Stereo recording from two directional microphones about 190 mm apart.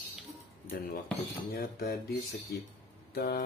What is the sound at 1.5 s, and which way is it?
Speech, 50° left (ahead or behind).